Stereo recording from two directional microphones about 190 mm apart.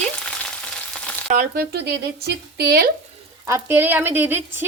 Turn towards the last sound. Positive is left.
turn(degrees=-10)  # may be behind; listen again after turning